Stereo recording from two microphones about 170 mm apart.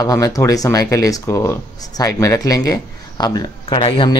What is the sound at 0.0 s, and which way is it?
Speech, 20° left (ahead or behind).